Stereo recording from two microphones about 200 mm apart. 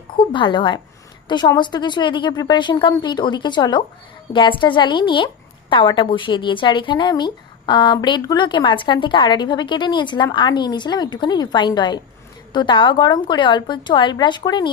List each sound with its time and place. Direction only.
0.3 s a woman's voice: 25° left (ahead or behind)